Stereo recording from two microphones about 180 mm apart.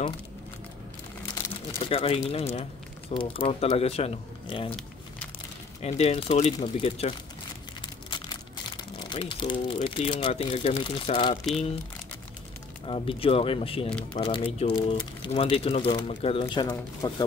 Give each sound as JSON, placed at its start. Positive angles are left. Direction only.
{"t": 1.4, "sound": "crumpling", "side_deg": 10}
{"t": 1.9, "sound": "speech", "side_deg": 30}
{"t": 5.8, "sound": "speech", "side_deg": 35}
{"t": 12.8, "sound": "speech", "side_deg": 30}